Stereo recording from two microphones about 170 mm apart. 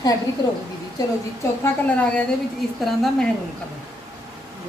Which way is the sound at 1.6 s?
10° left (ahead or behind).